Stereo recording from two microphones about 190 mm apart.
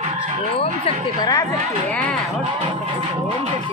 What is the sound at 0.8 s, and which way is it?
Speech, 20° left (ahead or behind).